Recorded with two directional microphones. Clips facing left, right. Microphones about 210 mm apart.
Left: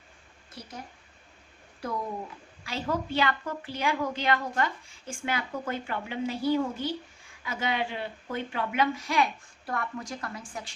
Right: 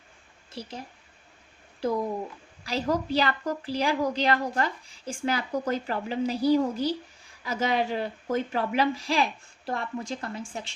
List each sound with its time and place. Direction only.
0.6 s a woman's voice: 30° right (ahead or behind)
2.6 s a woman's voice: 40° right (ahead or behind)